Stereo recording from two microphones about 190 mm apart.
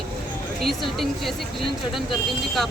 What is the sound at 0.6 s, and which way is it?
Speech, centre (ahead or behind).